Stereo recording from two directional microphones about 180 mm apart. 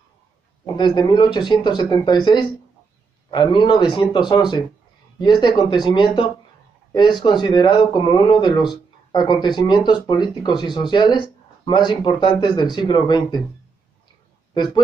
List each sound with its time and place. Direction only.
0.7 s speech: 25° left (ahead or behind)